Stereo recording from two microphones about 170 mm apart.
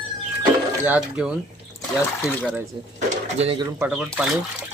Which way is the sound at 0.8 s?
10° right (ahead or behind).